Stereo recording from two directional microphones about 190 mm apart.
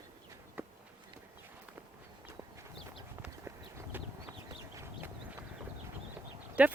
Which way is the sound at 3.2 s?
10° right (ahead or behind).